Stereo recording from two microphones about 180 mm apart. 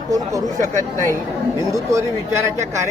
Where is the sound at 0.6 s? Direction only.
15° left (ahead or behind).